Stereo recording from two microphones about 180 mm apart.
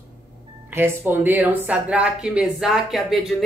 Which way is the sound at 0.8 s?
10° right (ahead or behind).